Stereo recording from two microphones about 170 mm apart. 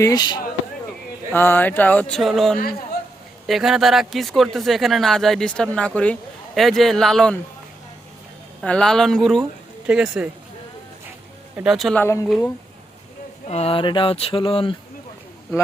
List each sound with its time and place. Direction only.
0.0 s speech: 25° left (ahead or behind)
1.3 s speech: 10° left (ahead or behind)
8.6 s speech: 5° left (ahead or behind)
11.5 s speech: 5° right (ahead or behind)
13.5 s speech: 35° left (ahead or behind)